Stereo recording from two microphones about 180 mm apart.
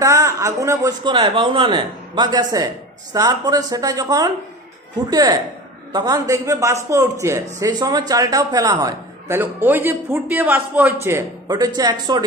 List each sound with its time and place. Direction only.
0.0 s a man's voice: 15° right (ahead or behind)